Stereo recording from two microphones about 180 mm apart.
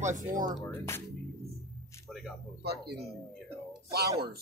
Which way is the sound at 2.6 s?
60° right (ahead or behind).